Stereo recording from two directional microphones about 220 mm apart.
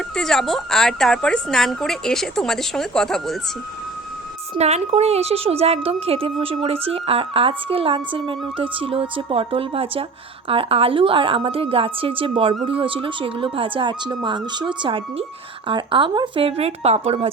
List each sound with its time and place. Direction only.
0.2 s a woman's voice: centre (ahead or behind)
4.5 s speech: 25° right (ahead or behind)